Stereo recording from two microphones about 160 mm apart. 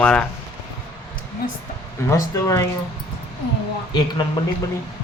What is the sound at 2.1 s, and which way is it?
Speech, 20° left (ahead or behind).